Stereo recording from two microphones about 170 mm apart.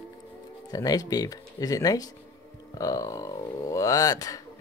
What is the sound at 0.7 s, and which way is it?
Speech, 20° left (ahead or behind).